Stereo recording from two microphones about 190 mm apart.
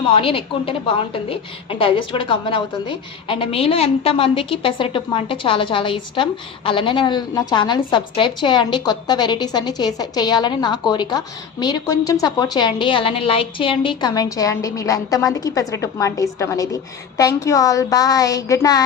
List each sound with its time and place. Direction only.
0.1 s a woman's voice: 30° left (ahead or behind)